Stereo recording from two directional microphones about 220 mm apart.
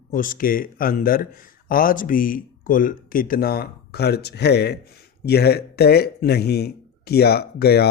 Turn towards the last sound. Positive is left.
turn(degrees=45)  # may be behind; listen again after turning